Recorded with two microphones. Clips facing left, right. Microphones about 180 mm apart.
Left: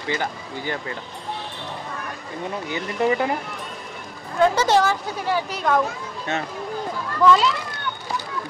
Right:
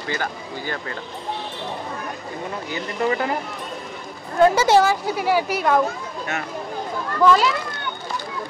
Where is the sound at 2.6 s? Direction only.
20° left (ahead or behind).